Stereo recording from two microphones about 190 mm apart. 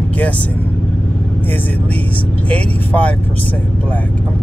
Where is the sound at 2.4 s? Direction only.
5° left (ahead or behind).